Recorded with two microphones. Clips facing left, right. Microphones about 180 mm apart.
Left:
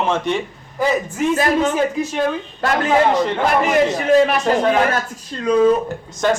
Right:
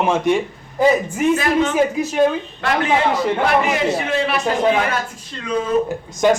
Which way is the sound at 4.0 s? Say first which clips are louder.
Left 6 dB; 40° left (ahead or behind).